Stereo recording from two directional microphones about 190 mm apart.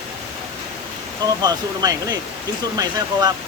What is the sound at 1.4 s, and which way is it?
Speech, 20° right (ahead or behind).